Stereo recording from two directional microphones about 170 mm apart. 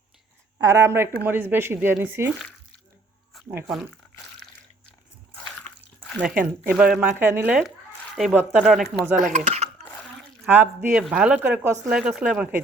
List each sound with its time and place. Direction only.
0.6 s speech: 20° right (ahead or behind)
6.1 s speech: 10° right (ahead or behind)
9.1 s speech: 45° right (ahead or behind)
10.5 s speech: 10° right (ahead or behind)